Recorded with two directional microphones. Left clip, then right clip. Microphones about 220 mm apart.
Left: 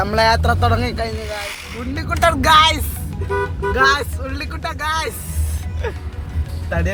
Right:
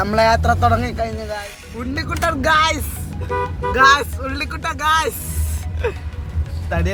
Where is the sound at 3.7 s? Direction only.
15° right (ahead or behind).